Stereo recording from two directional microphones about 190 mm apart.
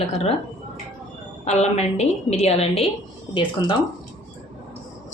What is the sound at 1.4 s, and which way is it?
A woman's voice, 35° left (ahead or behind).